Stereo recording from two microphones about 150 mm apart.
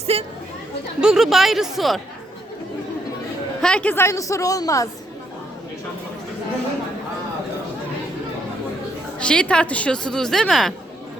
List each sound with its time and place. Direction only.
0.1 s speech: 40° right (ahead or behind)
1.0 s a woman's voice: 5° right (ahead or behind)
3.6 s a woman's voice: 5° left (ahead or behind); by 4.9 s 25° left (ahead or behind)
9.1 s a woman's voice: 5° left (ahead or behind)